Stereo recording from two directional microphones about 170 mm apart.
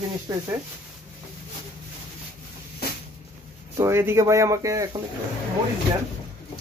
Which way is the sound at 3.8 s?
15° right (ahead or behind).